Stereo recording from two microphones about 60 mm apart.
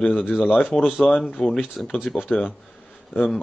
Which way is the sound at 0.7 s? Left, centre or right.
Centre.